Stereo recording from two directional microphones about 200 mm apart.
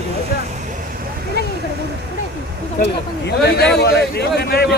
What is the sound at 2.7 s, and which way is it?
A man's voice, 55° left (ahead or behind).